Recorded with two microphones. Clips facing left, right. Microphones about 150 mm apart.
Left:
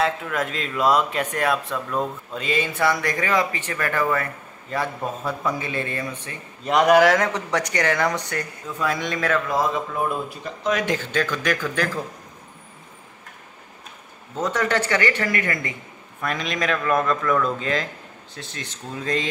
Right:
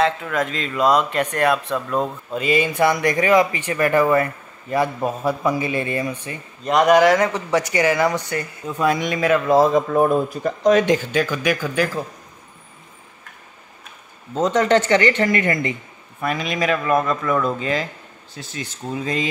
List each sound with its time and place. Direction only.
0.0 s speech: 5° left (ahead or behind); by 6.3 s 15° right (ahead or behind)
6.6 s speech: 5° left (ahead or behind)
8.6 s speech: 20° right (ahead or behind)
9.5 s speech: 35° right (ahead or behind)
11.1 s speech: 10° right (ahead or behind)
14.3 s speech: 20° right (ahead or behind)
16.2 s speech: 5° right (ahead or behind)